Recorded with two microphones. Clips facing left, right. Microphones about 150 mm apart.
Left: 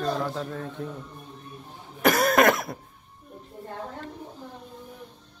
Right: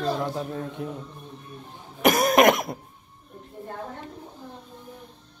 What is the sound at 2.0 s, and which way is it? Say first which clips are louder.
Speech: right 2 dB; 15° right (ahead or behind).